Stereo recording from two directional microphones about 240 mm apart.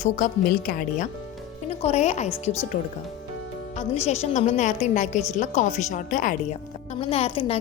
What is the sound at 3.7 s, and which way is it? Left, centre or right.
A woman's voice, left.